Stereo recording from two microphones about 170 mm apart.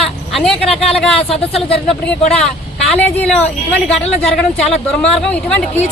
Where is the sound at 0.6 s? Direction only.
35° left (ahead or behind).